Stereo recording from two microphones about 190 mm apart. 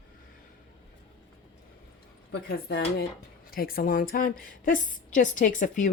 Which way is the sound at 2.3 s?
60° left (ahead or behind).